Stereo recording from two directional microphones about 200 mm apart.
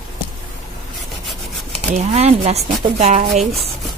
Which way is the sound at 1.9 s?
35° right (ahead or behind).